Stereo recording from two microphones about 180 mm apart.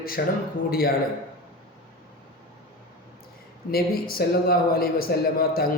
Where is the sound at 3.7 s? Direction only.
55° left (ahead or behind).